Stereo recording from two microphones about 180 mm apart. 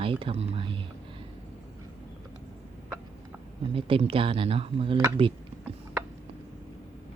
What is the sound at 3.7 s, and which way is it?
Speech, 30° right (ahead or behind).